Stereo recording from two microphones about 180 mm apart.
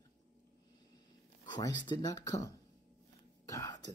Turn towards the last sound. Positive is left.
turn(degrees=20)  # may be behind; listen again after turning